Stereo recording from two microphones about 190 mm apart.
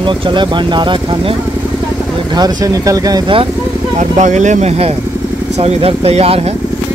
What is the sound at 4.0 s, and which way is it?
Speech, 40° right (ahead or behind).